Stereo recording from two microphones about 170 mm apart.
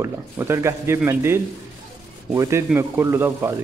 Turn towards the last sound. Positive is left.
turn(degrees=-15)  # may be behind; listen again after turning